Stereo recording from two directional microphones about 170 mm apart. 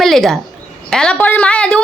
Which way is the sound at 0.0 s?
Centre (ahead or behind).